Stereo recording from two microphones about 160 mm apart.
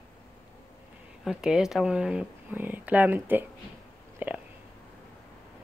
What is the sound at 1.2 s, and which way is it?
Speech, 5° right (ahead or behind).